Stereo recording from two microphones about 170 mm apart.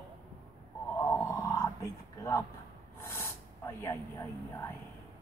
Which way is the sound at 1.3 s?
20° left (ahead or behind).